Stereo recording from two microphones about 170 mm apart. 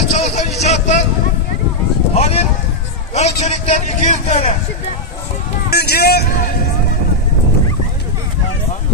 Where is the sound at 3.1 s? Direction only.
40° left (ahead or behind).